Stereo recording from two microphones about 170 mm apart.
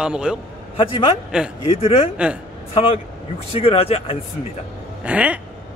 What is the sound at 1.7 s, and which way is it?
Speech, 35° left (ahead or behind).